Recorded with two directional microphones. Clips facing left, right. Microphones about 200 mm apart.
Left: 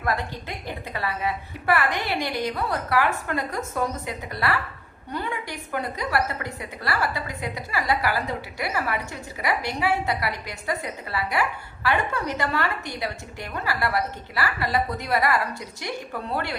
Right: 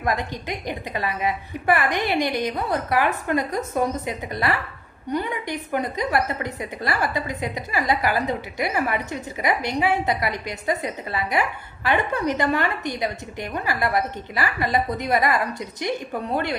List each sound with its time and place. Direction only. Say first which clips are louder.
0.0 s a woman's voice: right 2 dB; 15° right (ahead or behind)